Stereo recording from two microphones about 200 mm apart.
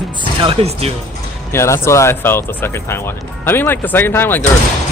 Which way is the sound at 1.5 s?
15° left (ahead or behind).